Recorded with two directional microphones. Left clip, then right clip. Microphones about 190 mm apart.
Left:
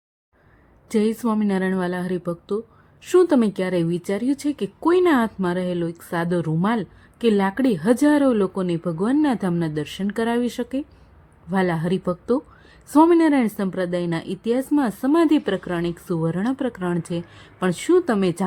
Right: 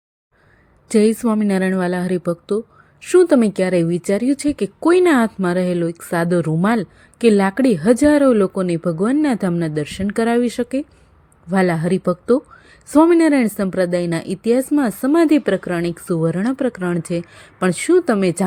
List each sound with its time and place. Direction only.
0.9 s a woman's voice: 20° right (ahead or behind)